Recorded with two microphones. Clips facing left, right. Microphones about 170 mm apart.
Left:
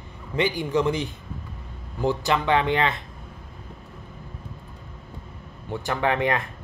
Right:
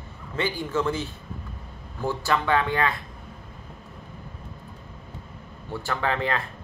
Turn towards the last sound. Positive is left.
turn(degrees=20)  # may be behind; listen again after turning